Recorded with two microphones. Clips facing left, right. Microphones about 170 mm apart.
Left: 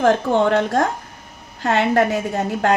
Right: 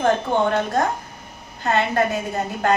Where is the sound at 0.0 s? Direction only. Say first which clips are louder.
Left 3 dB; 90° left.